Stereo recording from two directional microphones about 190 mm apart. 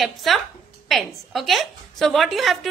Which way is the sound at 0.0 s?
Centre (ahead or behind).